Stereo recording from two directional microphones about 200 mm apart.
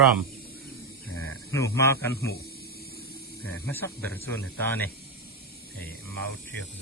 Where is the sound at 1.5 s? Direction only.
15° left (ahead or behind).